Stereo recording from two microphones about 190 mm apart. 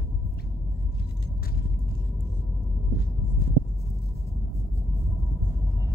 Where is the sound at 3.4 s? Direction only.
55° left (ahead or behind).